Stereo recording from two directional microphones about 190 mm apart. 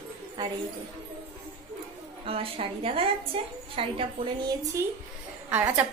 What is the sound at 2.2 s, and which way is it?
A woman's voice, 30° right (ahead or behind).